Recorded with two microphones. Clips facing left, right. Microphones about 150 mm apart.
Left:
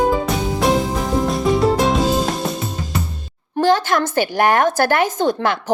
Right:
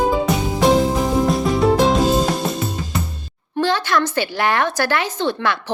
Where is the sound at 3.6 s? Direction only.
45° left (ahead or behind).